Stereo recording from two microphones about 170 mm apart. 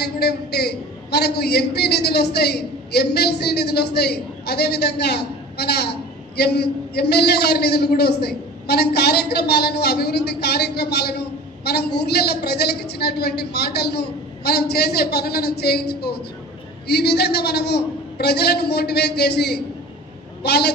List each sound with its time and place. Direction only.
0.0 s a man's voice: 70° left (ahead or behind)